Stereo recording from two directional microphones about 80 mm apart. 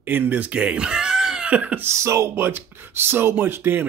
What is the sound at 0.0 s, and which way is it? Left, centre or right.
Speech, right.